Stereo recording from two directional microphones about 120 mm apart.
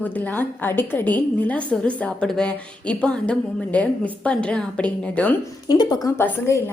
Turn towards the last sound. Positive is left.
turn(degrees=25)  # may be behind; listen again after turning